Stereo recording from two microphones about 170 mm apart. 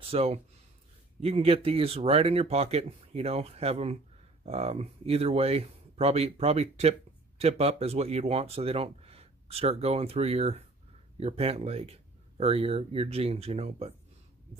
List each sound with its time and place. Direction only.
0.1 s speech: 35° right (ahead or behind)